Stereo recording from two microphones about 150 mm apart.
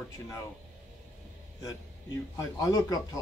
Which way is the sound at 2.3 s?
25° left (ahead or behind).